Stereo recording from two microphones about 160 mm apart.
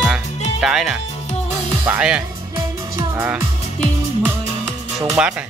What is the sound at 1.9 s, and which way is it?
Speech, 10° right (ahead or behind).